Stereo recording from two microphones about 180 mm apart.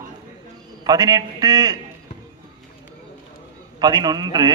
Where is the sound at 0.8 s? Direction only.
20° right (ahead or behind).